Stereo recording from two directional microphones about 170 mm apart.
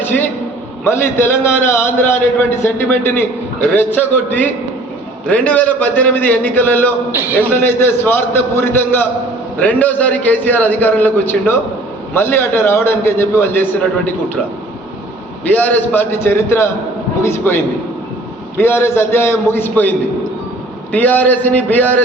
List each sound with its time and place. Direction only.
0.0 s a sound: 10° left (ahead or behind)
0.9 s a man's voice: 15° left (ahead or behind)
15.4 s a man's voice: 10° left (ahead or behind)